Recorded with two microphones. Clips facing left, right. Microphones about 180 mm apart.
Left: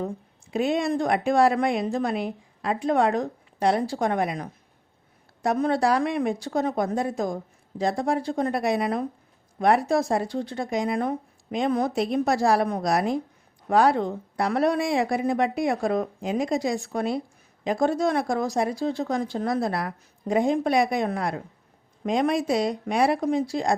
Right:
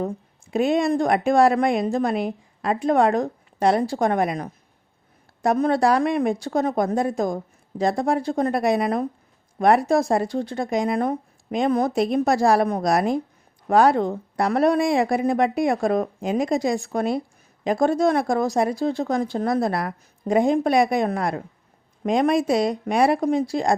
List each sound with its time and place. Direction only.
0.5 s a woman's voice: 50° right (ahead or behind)